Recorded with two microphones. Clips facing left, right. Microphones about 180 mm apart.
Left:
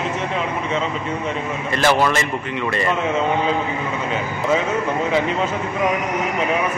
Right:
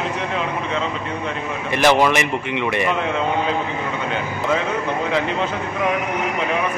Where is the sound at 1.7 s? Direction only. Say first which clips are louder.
Right 2 dB; 15° right (ahead or behind).